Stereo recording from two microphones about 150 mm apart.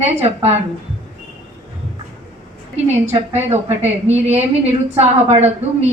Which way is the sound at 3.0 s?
45° right (ahead or behind).